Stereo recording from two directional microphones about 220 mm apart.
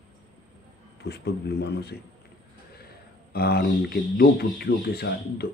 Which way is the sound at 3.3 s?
45° left (ahead or behind).